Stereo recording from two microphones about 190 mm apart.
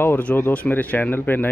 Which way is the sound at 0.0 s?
10° left (ahead or behind).